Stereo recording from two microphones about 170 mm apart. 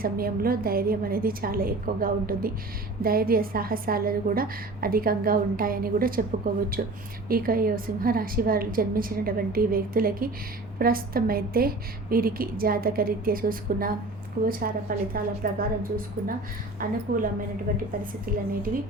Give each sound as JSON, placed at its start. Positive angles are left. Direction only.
{"t": 0.0, "sound": "a woman's voice", "side_deg": -60}